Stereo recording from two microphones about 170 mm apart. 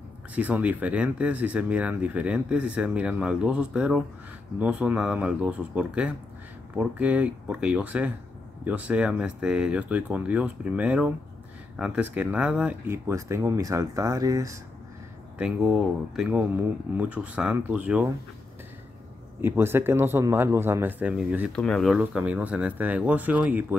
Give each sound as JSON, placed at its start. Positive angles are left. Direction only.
{"t": 0.3, "sound": "speech", "side_deg": -10}
{"t": 15.3, "sound": "speech", "side_deg": -5}
{"t": 19.4, "sound": "speech", "side_deg": -15}
{"t": 21.5, "sound": "speech", "side_deg": 5}